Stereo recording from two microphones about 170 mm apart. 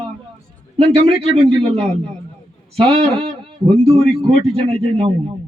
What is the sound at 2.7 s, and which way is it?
A man's voice, 35° right (ahead or behind).